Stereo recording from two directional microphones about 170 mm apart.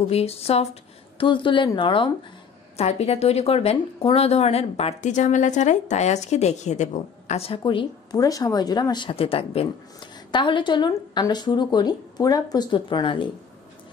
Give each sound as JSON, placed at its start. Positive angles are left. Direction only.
{"t": 0.1, "sound": "a woman's voice", "side_deg": 35}